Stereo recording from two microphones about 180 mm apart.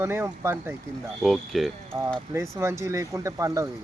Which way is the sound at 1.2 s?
Centre (ahead or behind).